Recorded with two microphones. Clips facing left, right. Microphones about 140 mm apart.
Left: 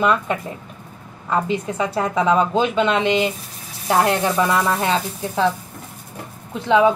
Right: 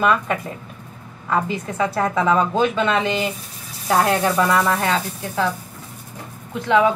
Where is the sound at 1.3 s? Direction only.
15° left (ahead or behind).